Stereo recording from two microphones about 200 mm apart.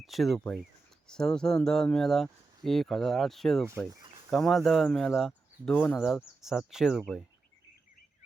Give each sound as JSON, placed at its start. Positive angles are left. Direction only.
{"t": 0.0, "sound": "speech", "side_deg": 0}
{"t": 3.8, "sound": "speech", "side_deg": -20}
{"t": 4.3, "sound": "speech", "side_deg": 0}